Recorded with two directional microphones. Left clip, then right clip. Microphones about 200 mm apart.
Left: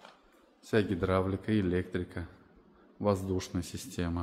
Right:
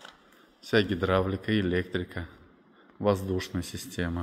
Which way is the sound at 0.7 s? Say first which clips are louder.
Right 4 dB; 5° right (ahead or behind).